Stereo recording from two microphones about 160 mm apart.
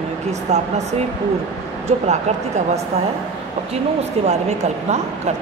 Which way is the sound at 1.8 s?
45° right (ahead or behind).